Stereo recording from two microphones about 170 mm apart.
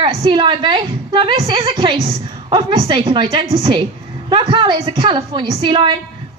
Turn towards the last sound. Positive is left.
turn(degrees=-30)  # may be behind; listen again after turning